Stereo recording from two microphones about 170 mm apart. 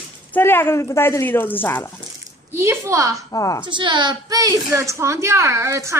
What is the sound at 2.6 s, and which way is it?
Speech, 15° right (ahead or behind).